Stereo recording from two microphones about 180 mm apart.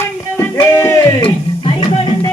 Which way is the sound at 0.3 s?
15° left (ahead or behind).